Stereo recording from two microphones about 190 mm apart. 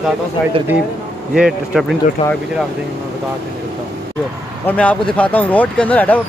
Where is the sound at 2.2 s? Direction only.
25° left (ahead or behind).